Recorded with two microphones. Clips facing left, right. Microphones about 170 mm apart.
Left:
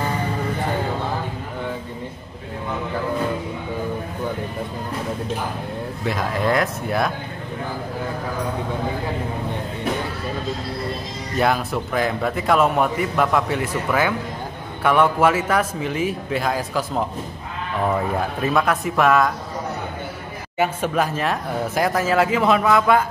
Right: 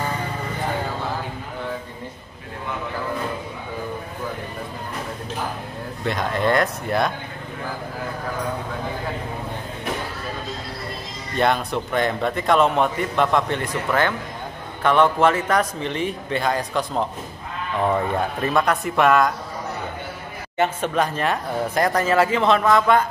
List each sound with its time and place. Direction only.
6.0 s a man's voice: centre (ahead or behind)
11.3 s a man's voice: 5° left (ahead or behind)
20.5 s a man's voice: 5° left (ahead or behind)